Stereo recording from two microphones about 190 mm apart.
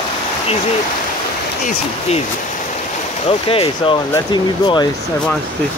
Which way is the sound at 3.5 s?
30° left (ahead or behind).